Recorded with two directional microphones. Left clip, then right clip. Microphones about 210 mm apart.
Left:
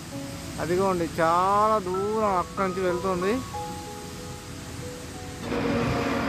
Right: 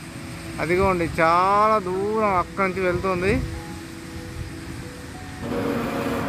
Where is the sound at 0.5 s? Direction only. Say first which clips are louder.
Right 4 dB; 15° right (ahead or behind).